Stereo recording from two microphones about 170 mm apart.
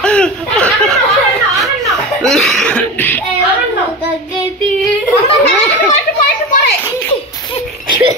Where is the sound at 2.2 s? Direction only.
Centre (ahead or behind).